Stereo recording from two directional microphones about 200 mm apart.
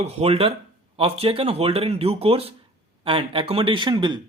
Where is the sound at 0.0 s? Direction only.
30° right (ahead or behind).